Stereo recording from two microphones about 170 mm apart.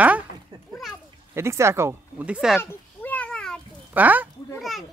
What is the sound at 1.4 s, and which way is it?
Speech, 15° right (ahead or behind).